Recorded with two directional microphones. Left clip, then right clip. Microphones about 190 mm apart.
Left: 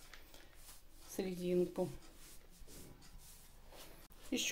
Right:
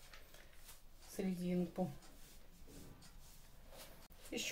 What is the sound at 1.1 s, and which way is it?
Speech, 45° left (ahead or behind).